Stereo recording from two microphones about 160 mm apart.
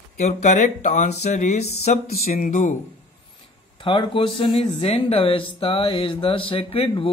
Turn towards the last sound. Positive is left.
turn(degrees=35)  # may be behind; listen again after turning